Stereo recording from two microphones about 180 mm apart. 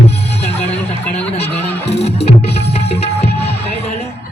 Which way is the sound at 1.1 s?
35° left (ahead or behind).